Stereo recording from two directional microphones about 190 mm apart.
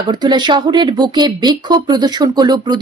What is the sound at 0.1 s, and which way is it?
A woman's voice, 25° right (ahead or behind).